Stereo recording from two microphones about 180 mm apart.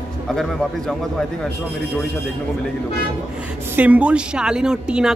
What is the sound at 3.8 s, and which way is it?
A woman's voice, 10° right (ahead or behind).